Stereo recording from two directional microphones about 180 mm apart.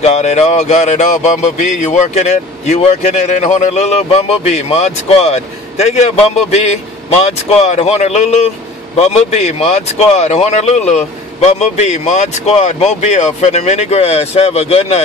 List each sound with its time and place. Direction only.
0.0 s speech: 40° left (ahead or behind)
7.2 s speech: 35° left (ahead or behind)